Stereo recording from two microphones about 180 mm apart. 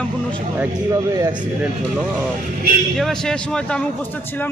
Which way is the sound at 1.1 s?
20° right (ahead or behind).